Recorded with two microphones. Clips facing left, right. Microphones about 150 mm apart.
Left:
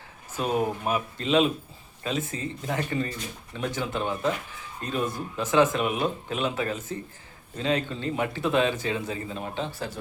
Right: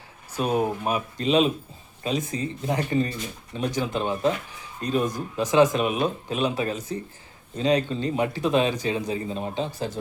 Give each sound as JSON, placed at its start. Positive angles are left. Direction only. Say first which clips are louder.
{"t": 0.3, "sound": "speech", "louder": "right 2 dB", "side_deg": -15}